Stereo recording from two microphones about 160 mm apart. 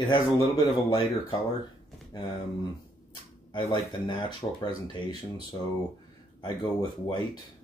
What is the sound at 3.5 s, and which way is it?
Speech, 30° left (ahead or behind).